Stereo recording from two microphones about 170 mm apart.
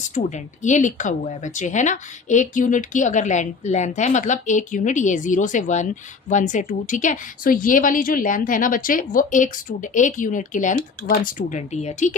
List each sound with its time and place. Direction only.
0.1 s speech: 45° left (ahead or behind)